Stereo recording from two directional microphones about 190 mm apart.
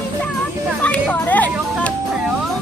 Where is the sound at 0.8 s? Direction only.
5° left (ahead or behind).